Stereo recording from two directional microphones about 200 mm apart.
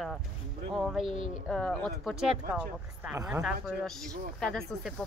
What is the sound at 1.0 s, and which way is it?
Speech, 25° right (ahead or behind).